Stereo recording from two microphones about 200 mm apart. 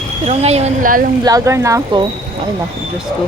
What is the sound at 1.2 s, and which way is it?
Speech, 15° right (ahead or behind).